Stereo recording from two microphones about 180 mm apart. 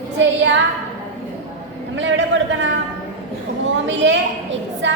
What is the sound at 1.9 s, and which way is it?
Speech, 90° right.